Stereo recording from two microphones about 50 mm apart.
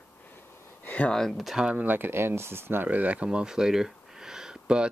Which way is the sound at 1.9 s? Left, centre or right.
Right.